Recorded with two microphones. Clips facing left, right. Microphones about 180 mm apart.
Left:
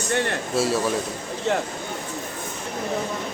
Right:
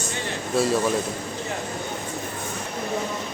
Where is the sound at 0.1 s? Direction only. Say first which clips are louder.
Left 11 dB; 65° left (ahead or behind).